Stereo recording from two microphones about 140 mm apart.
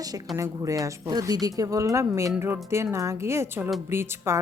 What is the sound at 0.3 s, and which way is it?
A woman's voice, 25° right (ahead or behind).